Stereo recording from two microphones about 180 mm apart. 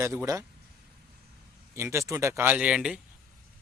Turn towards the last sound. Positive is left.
turn(degrees=-5)  # may be behind; listen again after turning